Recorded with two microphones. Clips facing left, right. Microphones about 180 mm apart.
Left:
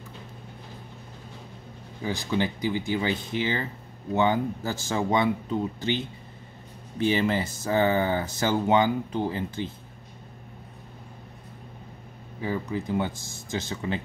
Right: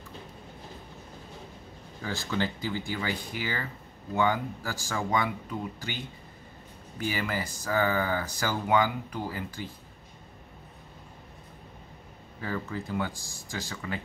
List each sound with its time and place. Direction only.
2.0 s speech: 15° left (ahead or behind)
12.4 s speech: 15° left (ahead or behind)